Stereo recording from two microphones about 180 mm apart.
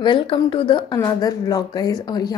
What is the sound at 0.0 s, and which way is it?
Speech, 25° left (ahead or behind).